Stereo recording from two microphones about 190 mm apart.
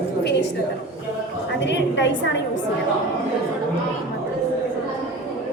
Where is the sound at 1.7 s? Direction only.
70° left (ahead or behind).